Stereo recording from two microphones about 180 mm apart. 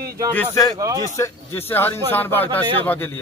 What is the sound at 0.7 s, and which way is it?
Speech, 20° right (ahead or behind).